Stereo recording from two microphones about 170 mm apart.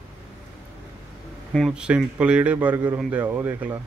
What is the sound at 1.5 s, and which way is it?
Speech, centre (ahead or behind).